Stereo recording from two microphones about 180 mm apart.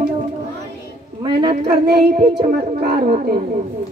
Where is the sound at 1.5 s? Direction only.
65° right (ahead or behind).